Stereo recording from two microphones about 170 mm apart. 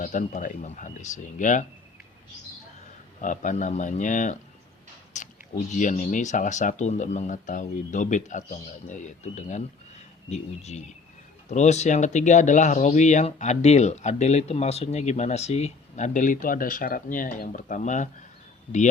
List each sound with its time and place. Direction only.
0.0 s speech: 50° left (ahead or behind)
3.2 s speech: 50° left (ahead or behind)
5.1 s a sound: 45° left (ahead or behind)
5.7 s speech: 45° left (ahead or behind)